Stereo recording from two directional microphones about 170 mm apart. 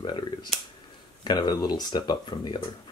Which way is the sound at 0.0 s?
25° left (ahead or behind).